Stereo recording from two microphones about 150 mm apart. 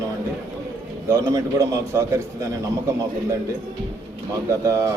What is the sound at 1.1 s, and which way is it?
A man's voice, 20° right (ahead or behind).